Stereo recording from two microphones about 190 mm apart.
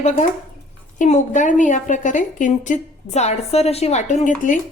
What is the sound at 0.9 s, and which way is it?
A woman's voice, 40° left (ahead or behind).